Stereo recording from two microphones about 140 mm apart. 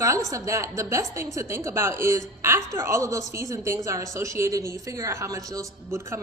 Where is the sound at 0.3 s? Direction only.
20° right (ahead or behind).